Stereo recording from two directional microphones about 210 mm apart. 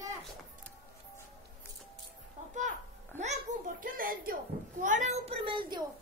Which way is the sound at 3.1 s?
35° right (ahead or behind).